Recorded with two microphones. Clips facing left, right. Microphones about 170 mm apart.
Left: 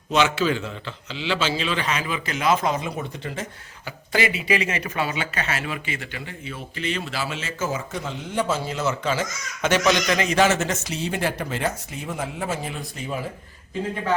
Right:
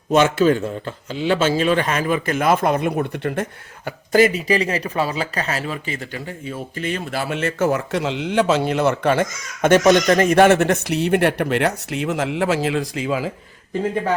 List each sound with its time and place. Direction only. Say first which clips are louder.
0.1 s a man's voice: right 6 dB; 50° right (ahead or behind)
3.8 s a man's voice: right 9 dB; 45° right (ahead or behind); by 13.3 s 90° right